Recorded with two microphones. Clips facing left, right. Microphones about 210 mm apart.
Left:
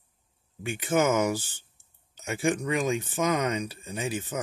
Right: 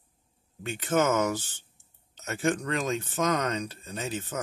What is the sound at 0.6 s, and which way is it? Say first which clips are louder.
Speech: left 1 dB; 10° left (ahead or behind).